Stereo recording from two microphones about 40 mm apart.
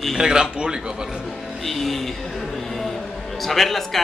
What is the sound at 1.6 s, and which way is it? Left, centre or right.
Speech, centre.